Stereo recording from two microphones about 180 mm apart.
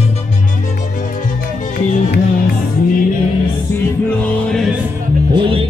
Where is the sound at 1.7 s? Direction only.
55° left (ahead or behind).